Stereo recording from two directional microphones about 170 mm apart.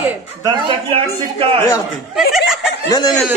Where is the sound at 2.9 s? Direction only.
25° left (ahead or behind).